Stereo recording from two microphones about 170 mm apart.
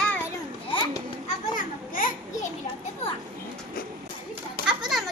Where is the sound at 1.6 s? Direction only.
50° left (ahead or behind).